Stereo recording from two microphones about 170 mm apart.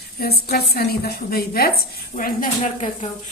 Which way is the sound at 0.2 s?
65° left (ahead or behind).